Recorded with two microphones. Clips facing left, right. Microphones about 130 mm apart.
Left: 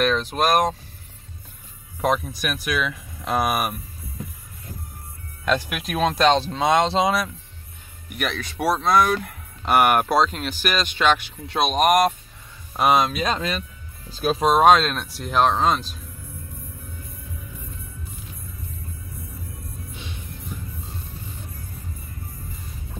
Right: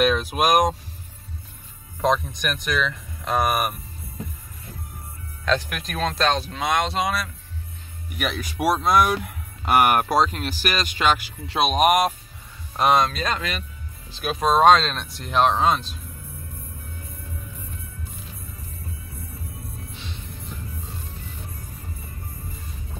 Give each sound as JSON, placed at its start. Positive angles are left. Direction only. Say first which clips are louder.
{"t": 0.0, "sound": "speech", "louder": "right 1 dB", "side_deg": -10}
{"t": 2.0, "sound": "speech", "louder": "right 1 dB", "side_deg": 10}
{"t": 5.4, "sound": "speech", "louder": "left 1 dB", "side_deg": 10}
{"t": 6.3, "sound": "speech", "louder": "left 5 dB", "side_deg": 30}
{"t": 8.2, "sound": "speech", "louder": "even", "side_deg": -5}
{"t": 13.4, "sound": "speech", "louder": "left 3 dB", "side_deg": 35}
{"t": 14.4, "sound": "speech", "louder": "even", "side_deg": 10}
{"t": 20.0, "sound": "music", "louder": "left 1 dB", "side_deg": 15}